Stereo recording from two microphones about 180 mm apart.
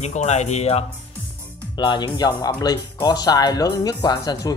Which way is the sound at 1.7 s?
25° left (ahead or behind).